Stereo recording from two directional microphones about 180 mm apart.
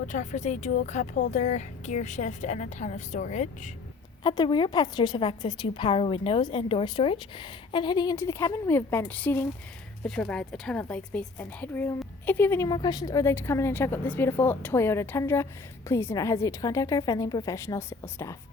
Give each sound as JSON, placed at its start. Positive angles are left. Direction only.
{"t": 0.1, "sound": "a woman's voice", "side_deg": 45}
{"t": 4.2, "sound": "a woman's voice", "side_deg": 25}